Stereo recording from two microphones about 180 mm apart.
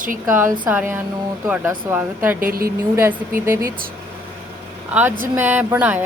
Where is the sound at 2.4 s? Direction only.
55° right (ahead or behind).